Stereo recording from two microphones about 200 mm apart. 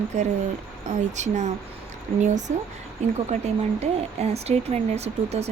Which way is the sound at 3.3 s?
35° right (ahead or behind).